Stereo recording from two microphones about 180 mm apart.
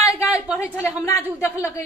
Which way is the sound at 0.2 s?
15° left (ahead or behind).